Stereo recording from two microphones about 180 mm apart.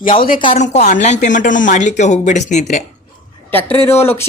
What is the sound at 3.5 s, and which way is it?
Speech, 10° left (ahead or behind).